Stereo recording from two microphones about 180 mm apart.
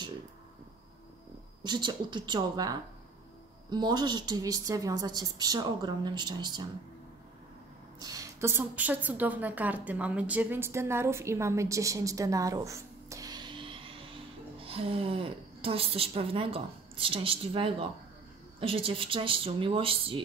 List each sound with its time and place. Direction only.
1.6 s a woman's voice: 25° right (ahead or behind)
8.0 s a woman's voice: 20° right (ahead or behind)